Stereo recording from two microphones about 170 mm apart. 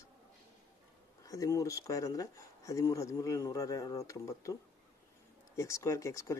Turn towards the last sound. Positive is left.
turn(degrees=15)  # may be behind; listen again after turning